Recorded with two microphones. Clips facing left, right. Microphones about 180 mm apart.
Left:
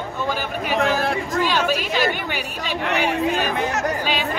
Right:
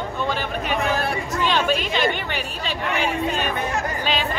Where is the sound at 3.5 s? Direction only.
75° left (ahead or behind).